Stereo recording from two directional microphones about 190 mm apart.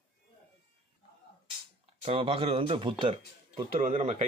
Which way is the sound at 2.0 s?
30° right (ahead or behind).